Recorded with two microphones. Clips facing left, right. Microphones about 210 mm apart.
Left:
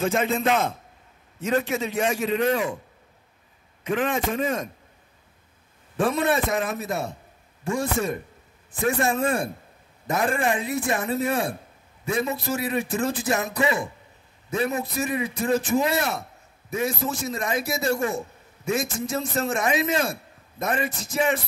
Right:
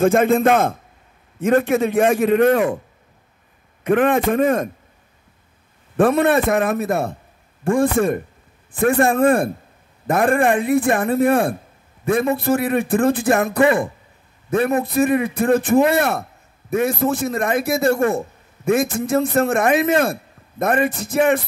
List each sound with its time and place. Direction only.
0.0 s a man's voice: 55° right (ahead or behind)
3.8 s a man's voice: 55° right (ahead or behind)
5.9 s a man's voice: 55° right (ahead or behind)